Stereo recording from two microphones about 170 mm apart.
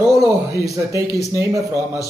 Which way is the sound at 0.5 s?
20° right (ahead or behind).